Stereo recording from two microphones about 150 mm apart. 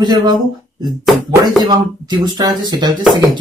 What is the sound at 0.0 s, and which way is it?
Speech, 30° right (ahead or behind).